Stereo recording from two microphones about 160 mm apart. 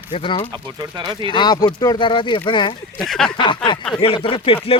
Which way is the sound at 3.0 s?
5° left (ahead or behind).